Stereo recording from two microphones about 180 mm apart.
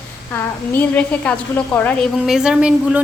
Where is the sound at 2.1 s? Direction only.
5° right (ahead or behind).